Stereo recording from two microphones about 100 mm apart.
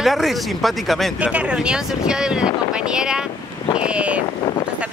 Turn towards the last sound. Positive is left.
turn(degrees=-10)  # may be behind; listen again after turning